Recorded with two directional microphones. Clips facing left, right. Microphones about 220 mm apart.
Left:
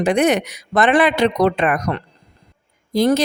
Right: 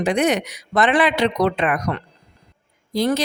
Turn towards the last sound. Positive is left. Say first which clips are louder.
# left 4 dB
turn(degrees=45)  # may be behind; listen again after turning